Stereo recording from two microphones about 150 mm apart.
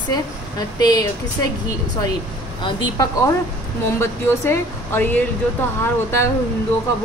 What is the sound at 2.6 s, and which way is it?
Speech, 25° left (ahead or behind).